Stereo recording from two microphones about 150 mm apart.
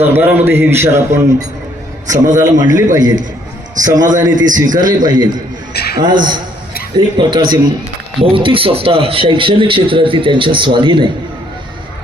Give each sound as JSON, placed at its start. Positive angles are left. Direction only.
{"t": 0.0, "sound": "a man's voice", "side_deg": -10}
{"t": 2.4, "sound": "a man's voice", "side_deg": -25}
{"t": 5.7, "sound": "a sound", "side_deg": 90}
{"t": 6.0, "sound": "a man's voice", "side_deg": -30}